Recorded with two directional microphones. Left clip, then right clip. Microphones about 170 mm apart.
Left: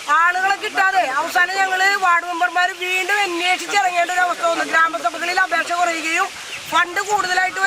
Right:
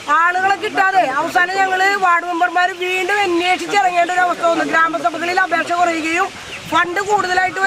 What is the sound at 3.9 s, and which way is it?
A man's voice, 10° right (ahead or behind).